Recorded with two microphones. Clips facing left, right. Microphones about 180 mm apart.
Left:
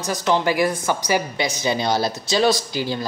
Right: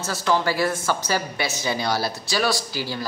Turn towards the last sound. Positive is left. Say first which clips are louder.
# left 4 dB
turn(degrees=20)  # may be behind; listen again after turning